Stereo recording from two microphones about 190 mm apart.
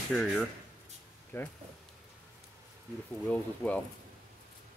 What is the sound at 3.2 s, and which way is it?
Speech, 10° left (ahead or behind).